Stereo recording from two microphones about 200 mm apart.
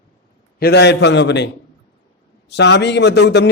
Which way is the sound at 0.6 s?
55° left (ahead or behind).